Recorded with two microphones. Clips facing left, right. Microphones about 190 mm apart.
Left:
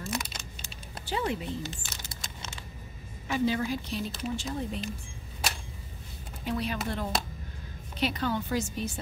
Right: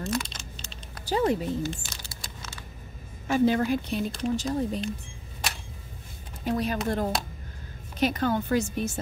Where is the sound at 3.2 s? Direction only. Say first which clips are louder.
Right 5 dB; 50° right (ahead or behind).